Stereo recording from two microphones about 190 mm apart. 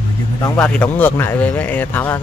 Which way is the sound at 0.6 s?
5° left (ahead or behind).